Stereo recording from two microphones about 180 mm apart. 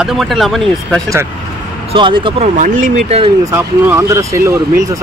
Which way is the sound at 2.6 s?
45° right (ahead or behind).